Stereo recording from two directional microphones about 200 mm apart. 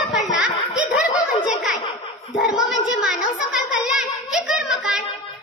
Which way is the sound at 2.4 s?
Centre (ahead or behind).